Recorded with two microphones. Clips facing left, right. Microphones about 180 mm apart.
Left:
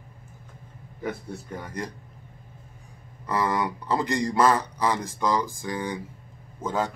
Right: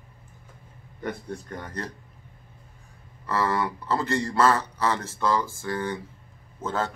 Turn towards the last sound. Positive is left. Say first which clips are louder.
# left 1 dB
turn(degrees=15)  # may be behind; listen again after turning